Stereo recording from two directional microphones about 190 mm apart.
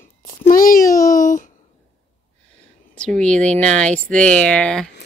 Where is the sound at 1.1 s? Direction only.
45° left (ahead or behind).